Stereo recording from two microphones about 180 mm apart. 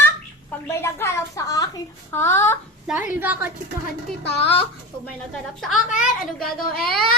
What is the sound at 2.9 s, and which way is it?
Child singing, 10° right (ahead or behind).